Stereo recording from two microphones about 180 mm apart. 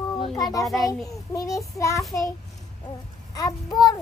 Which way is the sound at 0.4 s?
20° left (ahead or behind).